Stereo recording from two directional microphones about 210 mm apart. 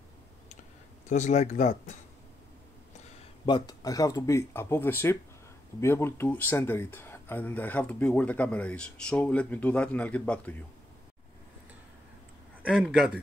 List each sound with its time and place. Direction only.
1.0 s speech: 35° left (ahead or behind)
3.4 s speech: 20° left (ahead or behind)
12.6 s speech: centre (ahead or behind)